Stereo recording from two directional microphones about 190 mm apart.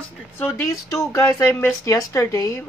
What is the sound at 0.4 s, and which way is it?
Speech, 15° left (ahead or behind).